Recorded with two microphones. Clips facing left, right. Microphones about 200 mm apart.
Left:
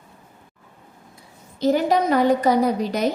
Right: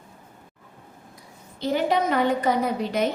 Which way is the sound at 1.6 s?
40° left (ahead or behind).